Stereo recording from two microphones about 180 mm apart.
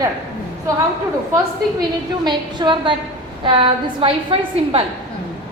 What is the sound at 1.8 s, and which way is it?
A woman's voice, 25° right (ahead or behind).